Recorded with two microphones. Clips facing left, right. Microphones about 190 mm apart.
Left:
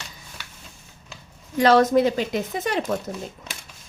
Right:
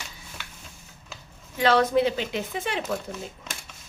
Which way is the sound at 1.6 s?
45° left (ahead or behind).